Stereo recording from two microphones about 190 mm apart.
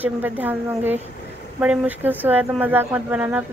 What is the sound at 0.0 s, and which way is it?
Speech, 10° right (ahead or behind).